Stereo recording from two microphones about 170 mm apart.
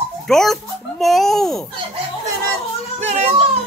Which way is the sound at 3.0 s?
40° right (ahead or behind).